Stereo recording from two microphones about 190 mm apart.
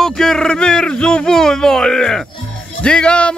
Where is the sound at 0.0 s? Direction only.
Centre (ahead or behind).